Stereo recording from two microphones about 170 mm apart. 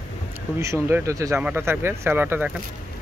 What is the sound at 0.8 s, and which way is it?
Speech, 15° right (ahead or behind).